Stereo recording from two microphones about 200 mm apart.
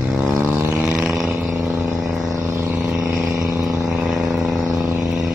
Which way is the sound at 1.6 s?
15° right (ahead or behind).